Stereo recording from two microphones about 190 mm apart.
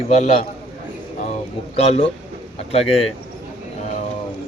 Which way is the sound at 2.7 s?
30° left (ahead or behind).